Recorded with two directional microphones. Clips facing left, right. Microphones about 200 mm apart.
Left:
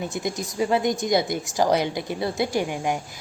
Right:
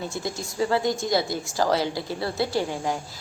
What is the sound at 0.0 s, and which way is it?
A woman's voice, 20° left (ahead or behind).